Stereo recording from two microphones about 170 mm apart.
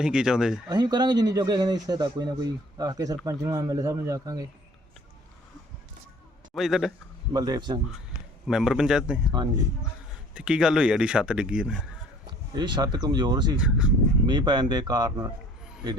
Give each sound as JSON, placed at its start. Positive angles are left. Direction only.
{"t": 0.0, "sound": "speech", "side_deg": -5}
{"t": 0.7, "sound": "a man's voice", "side_deg": -25}
{"t": 6.5, "sound": "a man's voice", "side_deg": 0}
{"t": 7.3, "sound": "a man's voice", "side_deg": -25}
{"t": 8.1, "sound": "speech", "side_deg": -5}
{"t": 10.3, "sound": "speech", "side_deg": -5}
{"t": 12.5, "sound": "a man's voice", "side_deg": -25}
{"t": 13.6, "sound": "speech", "side_deg": -5}
{"t": 14.3, "sound": "a man's voice", "side_deg": -25}